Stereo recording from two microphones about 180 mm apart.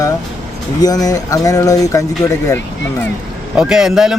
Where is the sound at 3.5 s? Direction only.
5° right (ahead or behind).